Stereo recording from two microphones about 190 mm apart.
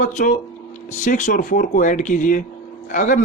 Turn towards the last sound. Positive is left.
turn(degrees=40)  # may be behind; listen again after turning